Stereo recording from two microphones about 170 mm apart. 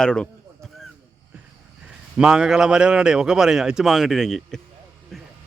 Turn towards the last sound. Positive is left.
turn(degrees=0)  # may be behind; listen again after turning